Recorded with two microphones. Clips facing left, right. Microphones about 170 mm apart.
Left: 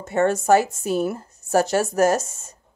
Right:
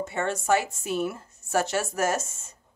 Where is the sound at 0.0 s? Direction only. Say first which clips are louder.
Left 8 dB; 45° left (ahead or behind).